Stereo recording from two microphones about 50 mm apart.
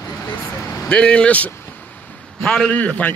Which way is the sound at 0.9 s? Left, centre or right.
Centre.